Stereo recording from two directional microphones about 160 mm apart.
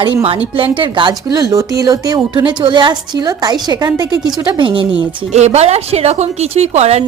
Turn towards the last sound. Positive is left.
turn(degrees=-40)  # may be behind; listen again after turning